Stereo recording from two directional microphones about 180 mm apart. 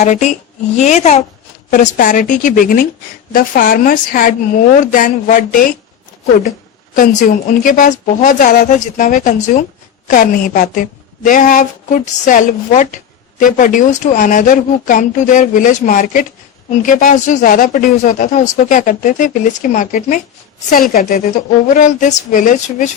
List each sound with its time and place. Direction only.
0.0 s a woman's voice: 40° left (ahead or behind)
6.9 s speech: 45° left (ahead or behind)